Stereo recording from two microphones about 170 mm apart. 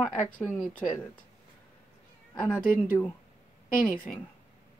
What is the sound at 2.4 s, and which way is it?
Speech, 5° left (ahead or behind).